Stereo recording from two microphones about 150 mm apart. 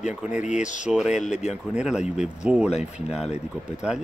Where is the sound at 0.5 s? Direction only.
55° left (ahead or behind).